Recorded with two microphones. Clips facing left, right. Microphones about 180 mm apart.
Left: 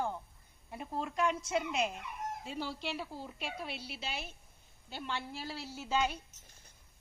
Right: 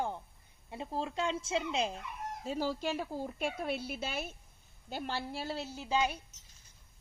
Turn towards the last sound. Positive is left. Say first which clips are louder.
# right 1 dB
turn(degrees=-15)  # may be behind; listen again after turning